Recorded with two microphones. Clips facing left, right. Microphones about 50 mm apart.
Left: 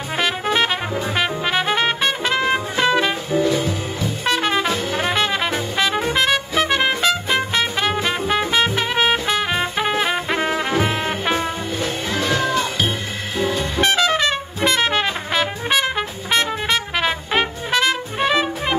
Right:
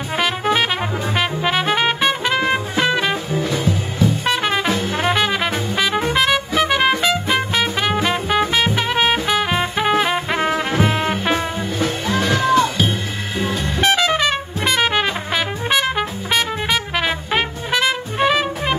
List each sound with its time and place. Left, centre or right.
0.2 s music: centre
4.2 s brass instrument: centre
6.0 s music: centre
13.4 s music: right
13.9 s trumpet: centre